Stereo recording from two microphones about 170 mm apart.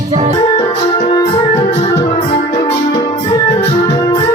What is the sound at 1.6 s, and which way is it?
Music, 35° left (ahead or behind).